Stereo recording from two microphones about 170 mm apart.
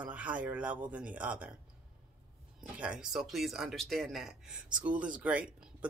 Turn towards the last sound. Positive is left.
turn(degrees=-5)  # may be behind; listen again after turning